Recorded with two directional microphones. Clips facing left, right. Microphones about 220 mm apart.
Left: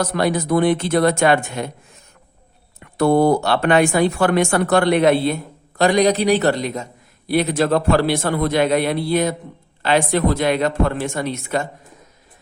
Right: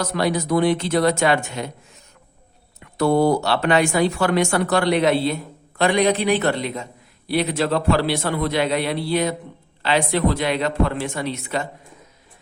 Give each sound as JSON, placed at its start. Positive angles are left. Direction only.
{"t": 0.0, "sound": "speech", "side_deg": 50}
{"t": 2.8, "sound": "speech", "side_deg": 55}